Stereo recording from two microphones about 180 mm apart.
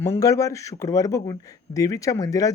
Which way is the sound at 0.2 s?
20° left (ahead or behind).